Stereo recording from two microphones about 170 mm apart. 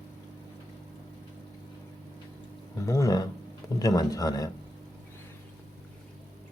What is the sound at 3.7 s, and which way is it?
Speech, 20° left (ahead or behind).